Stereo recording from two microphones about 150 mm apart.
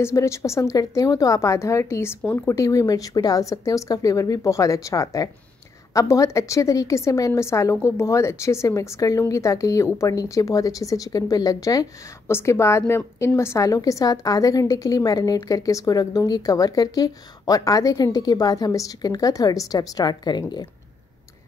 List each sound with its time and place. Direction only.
0.0 s a woman's voice: 20° left (ahead or behind)